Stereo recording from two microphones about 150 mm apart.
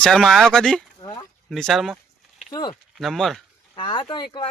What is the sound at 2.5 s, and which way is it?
Speech, 30° left (ahead or behind).